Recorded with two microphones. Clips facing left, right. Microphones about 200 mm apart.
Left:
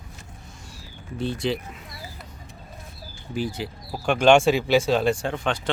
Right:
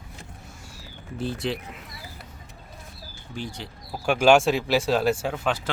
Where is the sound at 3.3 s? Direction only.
5° left (ahead or behind).